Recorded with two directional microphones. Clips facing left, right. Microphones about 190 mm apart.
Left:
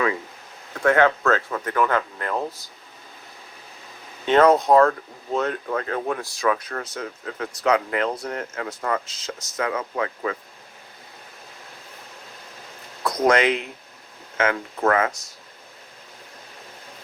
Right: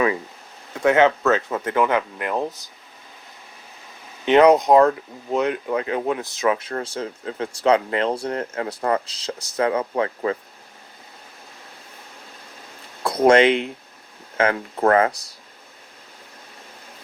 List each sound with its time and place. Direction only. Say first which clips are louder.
0.7 s speech: right 2 dB; 20° right (ahead or behind)
4.3 s speech: right 2 dB; 15° right (ahead or behind); by 10.3 s 30° right (ahead or behind)
13.1 s speech: right 4 dB; 30° right (ahead or behind)